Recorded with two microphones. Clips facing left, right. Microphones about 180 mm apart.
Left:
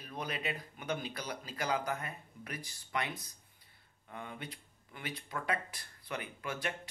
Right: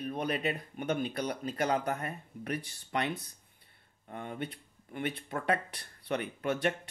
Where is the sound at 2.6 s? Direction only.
60° right (ahead or behind).